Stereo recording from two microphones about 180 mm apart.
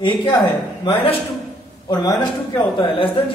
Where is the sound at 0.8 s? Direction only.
30° left (ahead or behind).